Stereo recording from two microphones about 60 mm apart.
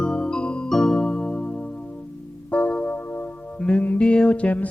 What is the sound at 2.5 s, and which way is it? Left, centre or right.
Music, left.